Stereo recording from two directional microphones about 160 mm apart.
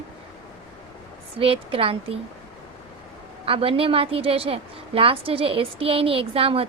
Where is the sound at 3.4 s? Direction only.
35° right (ahead or behind).